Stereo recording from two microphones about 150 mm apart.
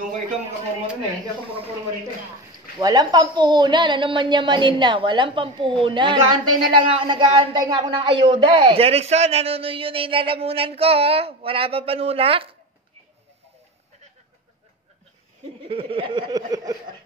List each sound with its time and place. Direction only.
2.8 s a woman's voice: 25° right (ahead or behind)
15.4 s snicker: 40° right (ahead or behind)